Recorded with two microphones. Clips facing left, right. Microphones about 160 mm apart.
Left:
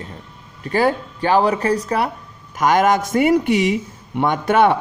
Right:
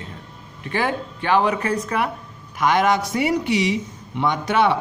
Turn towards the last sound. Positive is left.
turn(degrees=50)  # may be behind; listen again after turning